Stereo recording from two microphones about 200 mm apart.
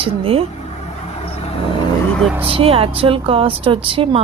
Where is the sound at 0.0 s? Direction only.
30° right (ahead or behind).